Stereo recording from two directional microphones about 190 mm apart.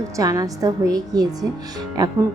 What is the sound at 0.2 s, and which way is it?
A woman's voice, 20° right (ahead or behind).